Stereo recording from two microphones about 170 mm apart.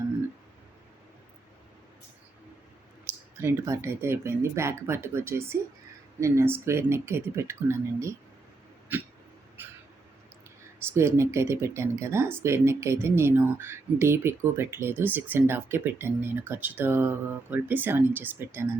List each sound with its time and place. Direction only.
3.3 s speech: 15° right (ahead or behind)
9.6 s a sound: 10° right (ahead or behind)
10.9 s speech: 15° right (ahead or behind)